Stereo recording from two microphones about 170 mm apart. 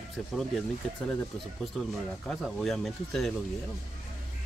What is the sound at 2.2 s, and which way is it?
Speech, centre (ahead or behind).